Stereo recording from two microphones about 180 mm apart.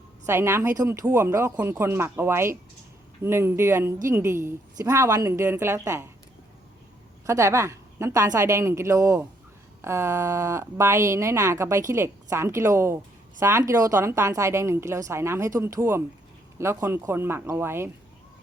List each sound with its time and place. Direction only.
0.3 s speech: 15° right (ahead or behind)
7.3 s speech: 15° right (ahead or behind)